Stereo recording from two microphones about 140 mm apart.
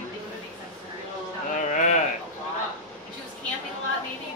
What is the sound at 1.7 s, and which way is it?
Sheep, 60° left (ahead or behind).